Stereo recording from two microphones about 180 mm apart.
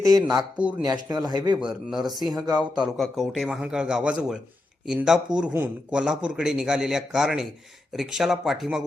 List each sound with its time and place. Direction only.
0.0 s speech: 20° right (ahead or behind)
1.5 s a man's voice: 5° right (ahead or behind)
2.1 s speech: 20° right (ahead or behind)
2.8 s a man's voice: centre (ahead or behind)